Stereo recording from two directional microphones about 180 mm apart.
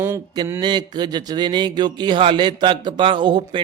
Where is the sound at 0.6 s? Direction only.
25° right (ahead or behind).